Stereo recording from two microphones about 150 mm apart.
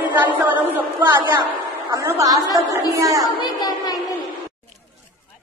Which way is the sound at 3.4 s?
25° left (ahead or behind).